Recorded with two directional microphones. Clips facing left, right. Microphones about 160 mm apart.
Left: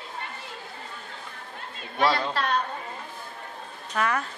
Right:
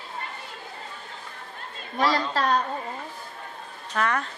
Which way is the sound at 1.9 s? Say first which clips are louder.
Even; 40° right (ahead or behind).